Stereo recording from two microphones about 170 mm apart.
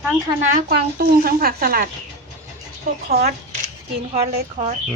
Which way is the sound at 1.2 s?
60° right (ahead or behind).